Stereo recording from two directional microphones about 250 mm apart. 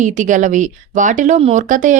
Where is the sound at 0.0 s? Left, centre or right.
Right.